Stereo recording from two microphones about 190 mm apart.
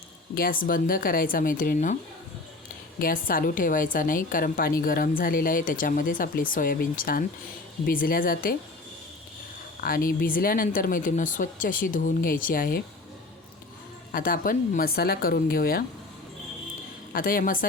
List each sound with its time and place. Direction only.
0.3 s a woman's voice: 50° left (ahead or behind)
3.0 s a woman's voice: 45° left (ahead or behind)
9.8 s a woman's voice: 50° left (ahead or behind)
14.1 s a woman's voice: 50° left (ahead or behind)
17.1 s a woman's voice: 50° left (ahead or behind)